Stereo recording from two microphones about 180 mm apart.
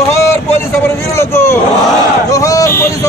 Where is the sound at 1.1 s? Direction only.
15° left (ahead or behind).